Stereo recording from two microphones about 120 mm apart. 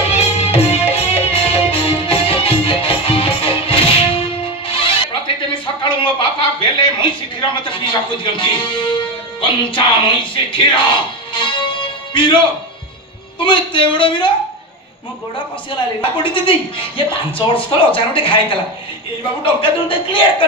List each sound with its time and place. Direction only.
0.1 s music: 60° left (ahead or behind); by 12.4 s 45° left (ahead or behind)
13.4 s a woman's voice: 45° left (ahead or behind)
15.3 s a woman's voice: 45° left (ahead or behind)